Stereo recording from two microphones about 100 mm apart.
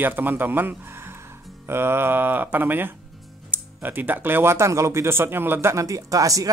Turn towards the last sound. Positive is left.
turn(degrees=-35)  # may be behind; listen again after turning